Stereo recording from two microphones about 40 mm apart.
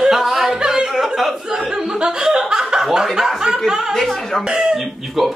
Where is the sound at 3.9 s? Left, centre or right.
Centre.